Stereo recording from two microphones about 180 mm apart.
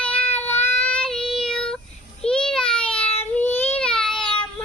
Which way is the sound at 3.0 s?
10° left (ahead or behind).